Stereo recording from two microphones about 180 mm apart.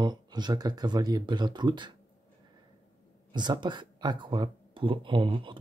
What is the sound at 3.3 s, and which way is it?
Speech, 25° right (ahead or behind).